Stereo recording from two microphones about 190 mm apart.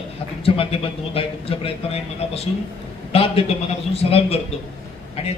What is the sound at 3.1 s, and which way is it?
A man's voice, 30° left (ahead or behind).